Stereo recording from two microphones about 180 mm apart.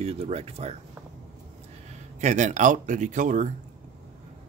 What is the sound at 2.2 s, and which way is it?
Speech, 40° right (ahead or behind).